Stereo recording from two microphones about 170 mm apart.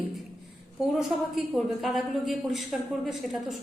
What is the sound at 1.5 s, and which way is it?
A woman's voice, centre (ahead or behind).